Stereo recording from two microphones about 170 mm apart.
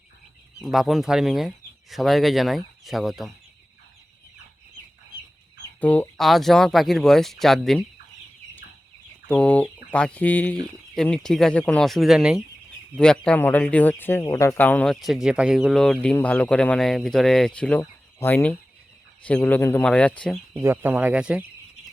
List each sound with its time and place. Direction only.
0.6 s speech: centre (ahead or behind)
5.8 s speech: 10° left (ahead or behind)
9.2 s speech: 5° left (ahead or behind)
20.6 s speech: 15° right (ahead or behind)